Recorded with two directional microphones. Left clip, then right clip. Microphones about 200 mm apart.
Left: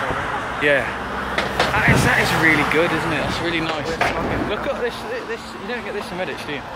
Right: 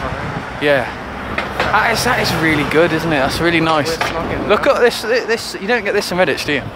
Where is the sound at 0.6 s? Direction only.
20° right (ahead or behind); by 6.6 s 45° right (ahead or behind).